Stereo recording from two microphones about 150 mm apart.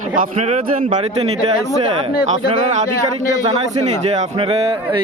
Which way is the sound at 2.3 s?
50° right (ahead or behind).